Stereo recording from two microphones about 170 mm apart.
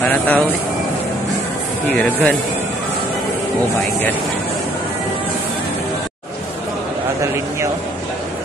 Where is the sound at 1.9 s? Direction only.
5° left (ahead or behind).